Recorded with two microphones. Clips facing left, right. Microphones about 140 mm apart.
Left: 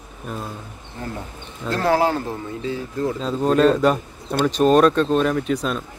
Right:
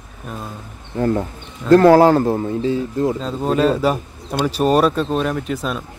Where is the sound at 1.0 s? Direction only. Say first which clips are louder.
Right 12 dB; 55° right (ahead or behind); by 3.1 s 25° right (ahead or behind).